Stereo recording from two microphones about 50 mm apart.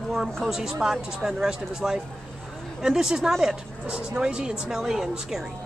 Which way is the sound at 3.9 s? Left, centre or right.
Centre.